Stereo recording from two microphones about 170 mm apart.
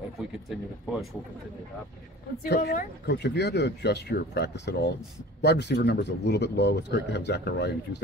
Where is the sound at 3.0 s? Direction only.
85° left.